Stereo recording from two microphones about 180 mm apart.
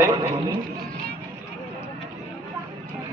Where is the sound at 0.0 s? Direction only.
20° right (ahead or behind).